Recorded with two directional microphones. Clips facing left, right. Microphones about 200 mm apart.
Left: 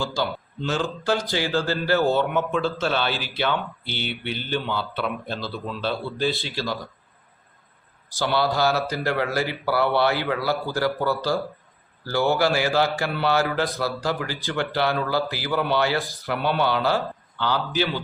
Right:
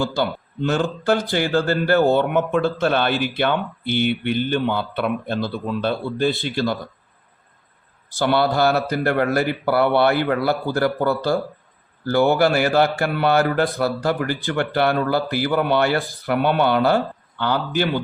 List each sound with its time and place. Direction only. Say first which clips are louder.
0.0 s speech: right 4 dB; 55° right (ahead or behind)
8.1 s speech: right 4 dB; 55° right (ahead or behind)